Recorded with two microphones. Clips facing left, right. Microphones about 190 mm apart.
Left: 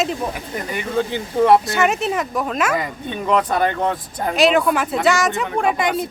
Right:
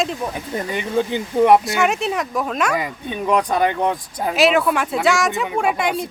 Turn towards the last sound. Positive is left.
turn(degrees=0)  # may be behind; listen again after turning